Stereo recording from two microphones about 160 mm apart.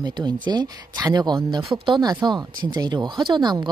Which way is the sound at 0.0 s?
25° right (ahead or behind).